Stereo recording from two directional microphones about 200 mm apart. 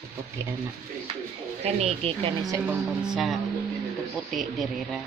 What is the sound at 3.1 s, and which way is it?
Speech, centre (ahead or behind).